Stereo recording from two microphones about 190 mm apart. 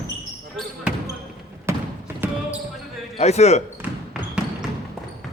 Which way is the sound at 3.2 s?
35° left (ahead or behind).